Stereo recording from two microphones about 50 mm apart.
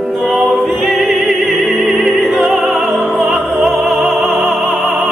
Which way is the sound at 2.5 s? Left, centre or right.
Centre.